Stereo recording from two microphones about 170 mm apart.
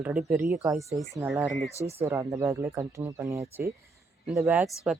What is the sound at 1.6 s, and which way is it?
Speech, 40° right (ahead or behind).